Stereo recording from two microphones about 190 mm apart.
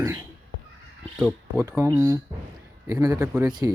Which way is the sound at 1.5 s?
15° right (ahead or behind).